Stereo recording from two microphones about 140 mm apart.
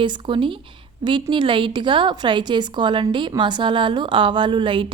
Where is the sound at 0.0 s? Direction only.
35° right (ahead or behind).